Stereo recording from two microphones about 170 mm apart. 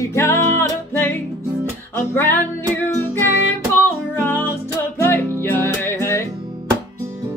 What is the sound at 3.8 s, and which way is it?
Music, 15° left (ahead or behind).